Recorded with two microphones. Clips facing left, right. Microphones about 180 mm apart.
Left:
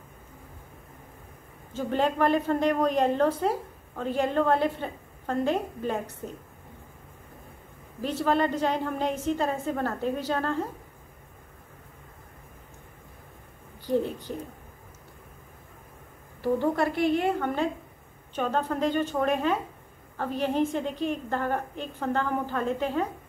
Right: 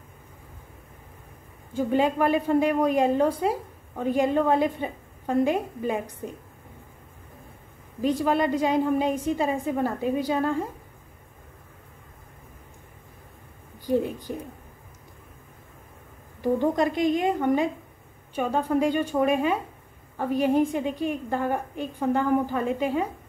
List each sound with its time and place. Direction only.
1.7 s a woman's voice: 10° right (ahead or behind)
8.0 s a woman's voice: 15° right (ahead or behind)
13.8 s a woman's voice: 15° right (ahead or behind)
16.3 s a woman's voice: 15° right (ahead or behind)